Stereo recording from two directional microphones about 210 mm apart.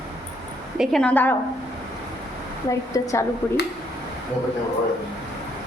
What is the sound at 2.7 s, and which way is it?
Speech, 15° left (ahead or behind).